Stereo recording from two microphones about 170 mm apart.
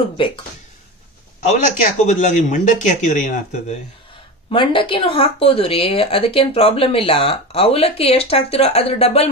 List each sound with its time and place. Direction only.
0.2 s speech: 30° left (ahead or behind)
2.0 s speech: 45° left (ahead or behind)
4.5 s speech: 30° left (ahead or behind)